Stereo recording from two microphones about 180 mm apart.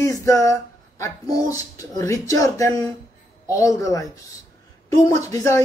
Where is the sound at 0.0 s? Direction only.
15° left (ahead or behind).